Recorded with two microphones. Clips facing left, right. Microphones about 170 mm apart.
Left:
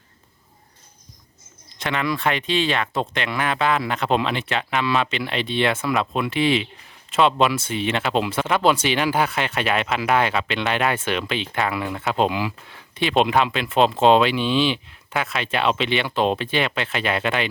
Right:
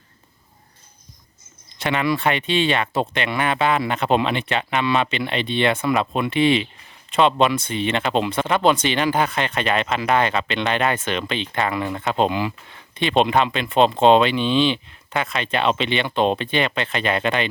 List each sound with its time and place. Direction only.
1.8 s speech: centre (ahead or behind)